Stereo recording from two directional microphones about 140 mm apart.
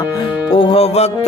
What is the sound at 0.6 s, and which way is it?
Speech, 40° left (ahead or behind).